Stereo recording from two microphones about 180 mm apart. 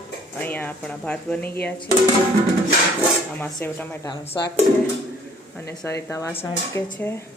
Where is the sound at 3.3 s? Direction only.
10° left (ahead or behind).